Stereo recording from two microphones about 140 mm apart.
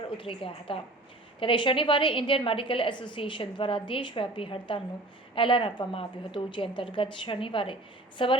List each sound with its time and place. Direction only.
0.1 s a woman's voice: 40° left (ahead or behind)